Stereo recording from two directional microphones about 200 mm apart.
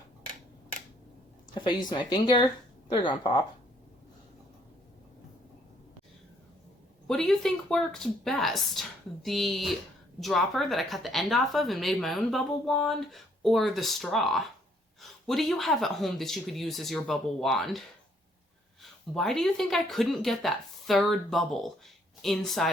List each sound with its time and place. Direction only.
1.5 s speech: 25° left (ahead or behind)
7.1 s a woman's voice: centre (ahead or behind)